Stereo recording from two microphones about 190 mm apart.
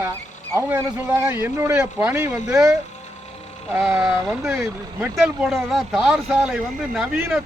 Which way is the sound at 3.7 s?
5° right (ahead or behind).